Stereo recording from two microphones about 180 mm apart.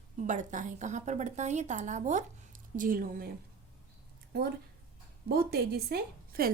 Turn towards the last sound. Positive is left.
turn(degrees=-55)  # may be behind; listen again after turning